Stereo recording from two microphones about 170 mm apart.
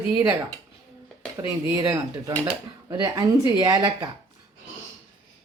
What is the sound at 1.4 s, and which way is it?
Speech, 20° right (ahead or behind).